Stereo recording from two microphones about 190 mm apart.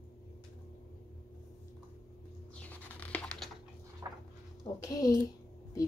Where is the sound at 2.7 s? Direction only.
10° left (ahead or behind).